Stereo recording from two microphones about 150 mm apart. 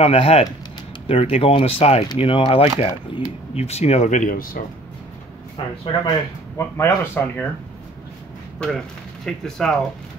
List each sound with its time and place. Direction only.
0.0 s speech: 40° left (ahead or behind); by 4.6 s 70° left (ahead or behind)
5.6 s speech: 35° left (ahead or behind)
6.0 s speech: 15° left (ahead or behind)
8.5 s speech: 5° left (ahead or behind)